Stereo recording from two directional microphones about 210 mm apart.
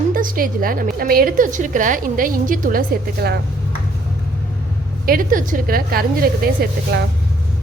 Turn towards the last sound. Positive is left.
turn(degrees=-45)  # may be behind; listen again after turning